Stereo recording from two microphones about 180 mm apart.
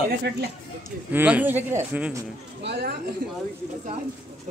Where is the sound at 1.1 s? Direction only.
10° right (ahead or behind).